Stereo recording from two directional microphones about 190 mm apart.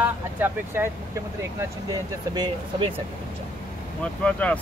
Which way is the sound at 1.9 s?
20° right (ahead or behind).